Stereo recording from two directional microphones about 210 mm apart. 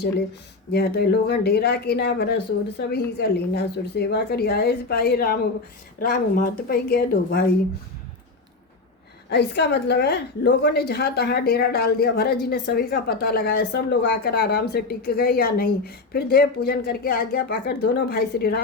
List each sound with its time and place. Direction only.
0.7 s a woman's voice: 50° left (ahead or behind)
9.3 s a woman's voice: 55° left (ahead or behind)